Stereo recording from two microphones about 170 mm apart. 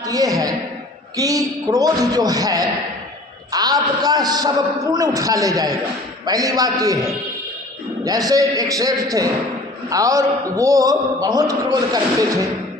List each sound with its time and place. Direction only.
0.0 s a man's voice: 20° right (ahead or behind)